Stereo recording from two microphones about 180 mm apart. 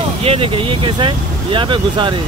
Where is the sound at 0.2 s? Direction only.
30° right (ahead or behind).